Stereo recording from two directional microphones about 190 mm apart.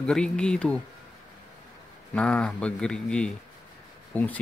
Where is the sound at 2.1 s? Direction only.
5° left (ahead or behind).